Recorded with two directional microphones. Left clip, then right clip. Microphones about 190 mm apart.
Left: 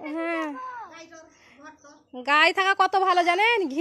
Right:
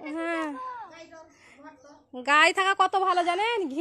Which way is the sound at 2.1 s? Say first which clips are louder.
Left 1 dB; centre (ahead or behind).